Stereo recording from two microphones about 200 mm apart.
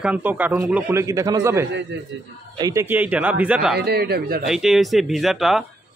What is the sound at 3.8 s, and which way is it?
Speech, 55° right (ahead or behind).